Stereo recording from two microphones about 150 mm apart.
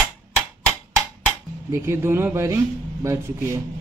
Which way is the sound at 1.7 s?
15° right (ahead or behind).